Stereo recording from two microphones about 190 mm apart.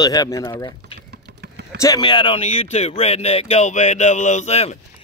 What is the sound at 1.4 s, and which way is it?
Vehicle, 60° right (ahead or behind).